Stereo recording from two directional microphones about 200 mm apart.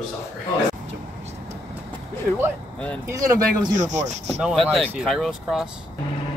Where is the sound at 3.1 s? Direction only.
15° right (ahead or behind).